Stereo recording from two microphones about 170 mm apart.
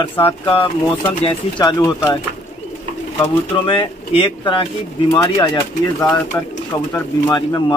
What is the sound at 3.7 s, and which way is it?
Speech, 30° left (ahead or behind).